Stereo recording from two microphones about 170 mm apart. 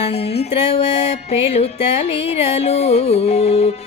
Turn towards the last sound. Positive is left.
turn(degrees=40)  # may be behind; listen again after turning